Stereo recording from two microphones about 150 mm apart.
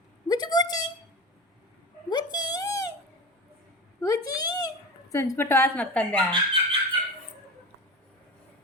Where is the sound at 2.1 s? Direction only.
30° left (ahead or behind).